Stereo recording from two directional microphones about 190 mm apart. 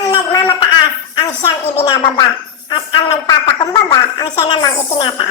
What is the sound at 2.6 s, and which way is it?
A woman's voice, 25° left (ahead or behind).